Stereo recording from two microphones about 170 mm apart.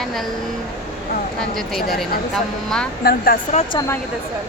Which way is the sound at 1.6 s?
Centre (ahead or behind).